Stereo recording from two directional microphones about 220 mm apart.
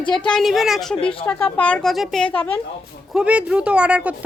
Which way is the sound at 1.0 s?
25° left (ahead or behind).